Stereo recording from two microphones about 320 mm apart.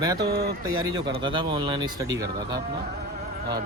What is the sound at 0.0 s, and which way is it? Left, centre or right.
Speech, centre.